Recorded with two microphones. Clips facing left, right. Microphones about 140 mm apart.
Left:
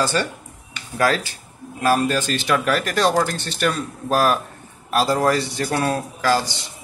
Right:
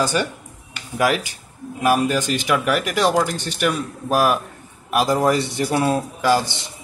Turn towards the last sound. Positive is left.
turn(degrees=-20)  # may be behind; listen again after turning